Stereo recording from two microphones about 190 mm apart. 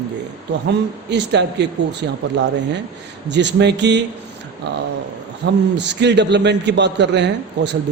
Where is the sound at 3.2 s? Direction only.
65° right (ahead or behind).